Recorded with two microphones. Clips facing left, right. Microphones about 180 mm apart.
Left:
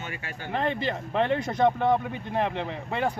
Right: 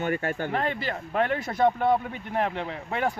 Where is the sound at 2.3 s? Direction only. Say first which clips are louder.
Even; 20° left (ahead or behind).